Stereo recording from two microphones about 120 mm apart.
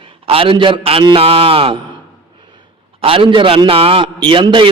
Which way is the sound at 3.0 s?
50° right (ahead or behind).